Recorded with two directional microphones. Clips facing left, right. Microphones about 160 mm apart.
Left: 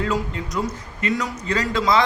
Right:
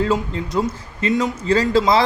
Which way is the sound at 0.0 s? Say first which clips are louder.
Right 4 dB; 30° right (ahead or behind).